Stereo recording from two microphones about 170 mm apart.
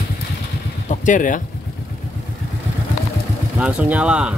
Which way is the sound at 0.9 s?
45° left (ahead or behind).